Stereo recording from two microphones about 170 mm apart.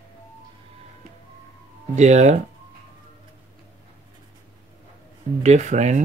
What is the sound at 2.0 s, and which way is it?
Speech, 45° right (ahead or behind).